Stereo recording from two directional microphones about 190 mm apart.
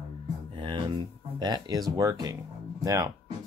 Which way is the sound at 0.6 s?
25° right (ahead or behind).